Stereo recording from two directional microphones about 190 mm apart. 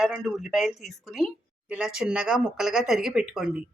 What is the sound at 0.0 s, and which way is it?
A woman's voice, centre (ahead or behind).